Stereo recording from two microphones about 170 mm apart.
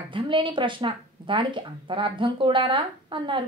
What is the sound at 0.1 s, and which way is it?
A woman's voice, 30° right (ahead or behind).